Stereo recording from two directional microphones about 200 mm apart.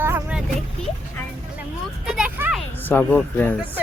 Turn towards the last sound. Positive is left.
turn(degrees=10)  # may be behind; listen again after turning